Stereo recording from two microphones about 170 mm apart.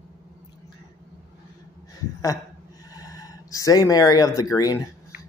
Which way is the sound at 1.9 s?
20° left (ahead or behind).